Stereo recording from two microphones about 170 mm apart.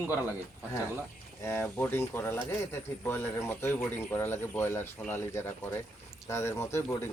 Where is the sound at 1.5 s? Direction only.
10° left (ahead or behind).